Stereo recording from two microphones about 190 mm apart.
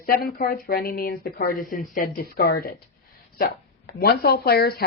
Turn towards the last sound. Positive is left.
turn(degrees=55)  # may be behind; listen again after turning